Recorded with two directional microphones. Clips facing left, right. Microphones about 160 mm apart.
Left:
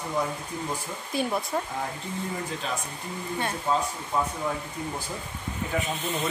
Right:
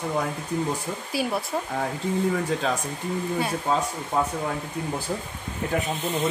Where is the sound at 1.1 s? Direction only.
5° right (ahead or behind).